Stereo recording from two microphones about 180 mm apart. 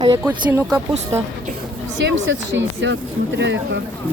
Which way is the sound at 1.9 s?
90° right.